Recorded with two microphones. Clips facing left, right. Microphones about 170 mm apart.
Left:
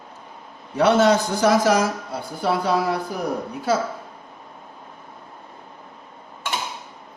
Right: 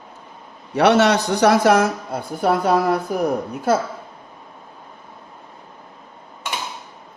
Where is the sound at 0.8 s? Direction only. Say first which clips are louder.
Right 1 dB; 75° right (ahead or behind); by 3.0 s 55° right (ahead or behind).